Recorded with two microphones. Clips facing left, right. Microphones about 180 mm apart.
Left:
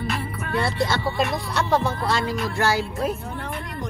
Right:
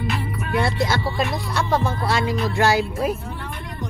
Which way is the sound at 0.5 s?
15° right (ahead or behind).